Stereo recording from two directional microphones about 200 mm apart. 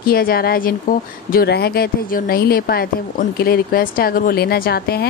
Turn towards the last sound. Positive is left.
turn(degrees=50)  # may be behind; listen again after turning